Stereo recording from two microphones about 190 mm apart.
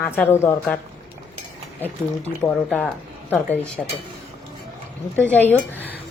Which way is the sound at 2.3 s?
15° left (ahead or behind).